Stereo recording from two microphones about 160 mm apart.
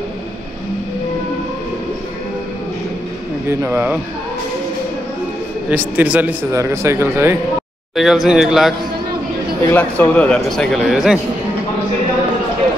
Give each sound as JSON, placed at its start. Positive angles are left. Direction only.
{"t": 3.4, "sound": "a man's voice", "side_deg": -15}
{"t": 5.7, "sound": "a man's voice", "side_deg": -10}
{"t": 7.9, "sound": "speech", "side_deg": 0}
{"t": 9.7, "sound": "speech", "side_deg": 15}